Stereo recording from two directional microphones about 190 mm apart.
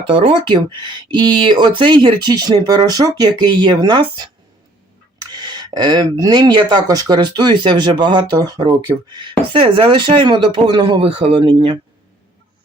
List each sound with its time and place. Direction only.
0.1 s speech: 25° right (ahead or behind)
5.3 s speech: 20° right (ahead or behind)